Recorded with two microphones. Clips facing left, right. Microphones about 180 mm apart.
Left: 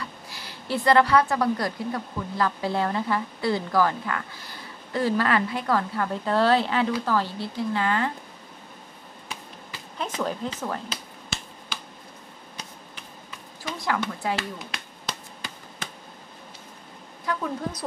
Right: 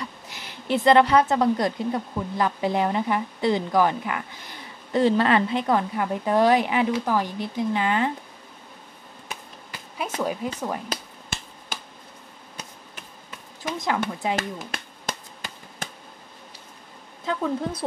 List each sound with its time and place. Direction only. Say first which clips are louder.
0.0 s a woman's voice: right 2 dB; 20° right (ahead or behind)
9.9 s speech: right 2 dB; 10° right (ahead or behind)
10.9 s finger snapping: right 2 dB; 50° right (ahead or behind)
13.7 s speech: right 1 dB; 20° right (ahead or behind)
14.3 s a sound: right 2 dB; 45° right (ahead or behind)
17.2 s a woman's voice: right 3 dB; 25° right (ahead or behind)